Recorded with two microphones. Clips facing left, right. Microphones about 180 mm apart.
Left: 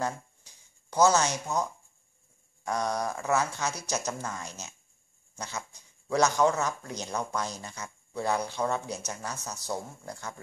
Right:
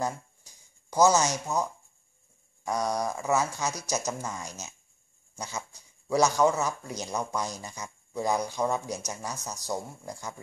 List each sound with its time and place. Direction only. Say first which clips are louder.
0.0 s speech: right 1 dB; 10° right (ahead or behind)
5.3 s dog: right 1 dB; 10° right (ahead or behind)
6.0 s speech: right 1 dB; 10° right (ahead or behind)